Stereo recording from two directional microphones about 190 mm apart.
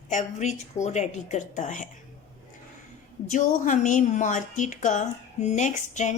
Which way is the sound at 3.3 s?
40° left (ahead or behind).